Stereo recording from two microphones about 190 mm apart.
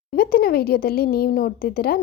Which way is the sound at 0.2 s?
50° left (ahead or behind).